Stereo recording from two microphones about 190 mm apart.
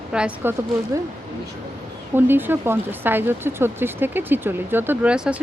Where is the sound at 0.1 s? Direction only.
5° right (ahead or behind).